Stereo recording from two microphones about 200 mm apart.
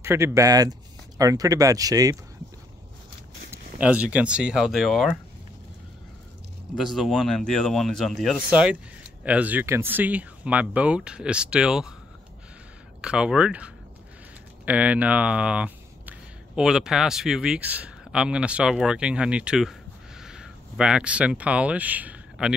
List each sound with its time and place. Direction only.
0.0 s speech: 15° right (ahead or behind)
3.7 s speech: 5° right (ahead or behind)
6.7 s speech: centre (ahead or behind)
13.0 s speech: 5° right (ahead or behind)